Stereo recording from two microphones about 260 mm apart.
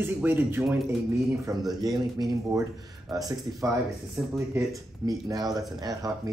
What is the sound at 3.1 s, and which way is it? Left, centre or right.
Speech, centre.